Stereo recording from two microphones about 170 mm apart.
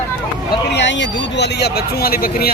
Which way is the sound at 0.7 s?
90° left.